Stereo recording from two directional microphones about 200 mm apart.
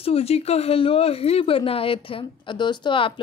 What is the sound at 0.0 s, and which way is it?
Speech, 30° left (ahead or behind).